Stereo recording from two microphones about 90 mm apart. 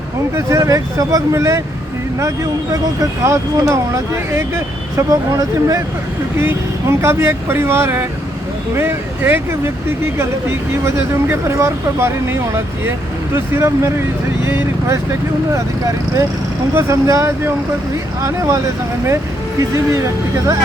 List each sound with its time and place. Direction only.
0.3 s speech: 35° right (ahead or behind)
6.4 s speech: 25° right (ahead or behind)
10.8 s speech: 30° right (ahead or behind)
16.7 s speech: 35° right (ahead or behind)